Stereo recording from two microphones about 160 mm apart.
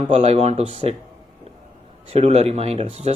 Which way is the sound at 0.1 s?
40° right (ahead or behind).